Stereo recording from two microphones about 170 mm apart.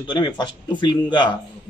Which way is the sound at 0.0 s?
25° left (ahead or behind).